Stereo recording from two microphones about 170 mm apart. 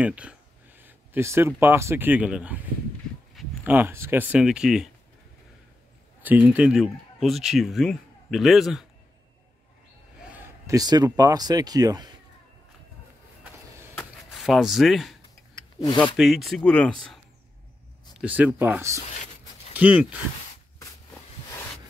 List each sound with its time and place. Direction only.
0.0 s speech: 5° right (ahead or behind)
3.6 s speech: 10° right (ahead or behind)
6.2 s speech: 10° right (ahead or behind)
10.3 s speech: 20° right (ahead or behind)
13.9 s a sound: centre (ahead or behind)
16.2 s speech: centre (ahead or behind)
18.2 s speech: 10° right (ahead or behind)